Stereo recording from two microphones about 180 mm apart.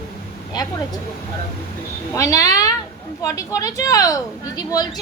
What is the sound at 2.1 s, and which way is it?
A woman's voice, 20° left (ahead or behind).